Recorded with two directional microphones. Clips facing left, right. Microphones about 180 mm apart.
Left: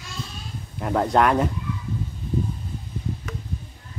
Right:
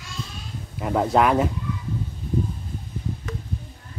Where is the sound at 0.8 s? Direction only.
5° right (ahead or behind).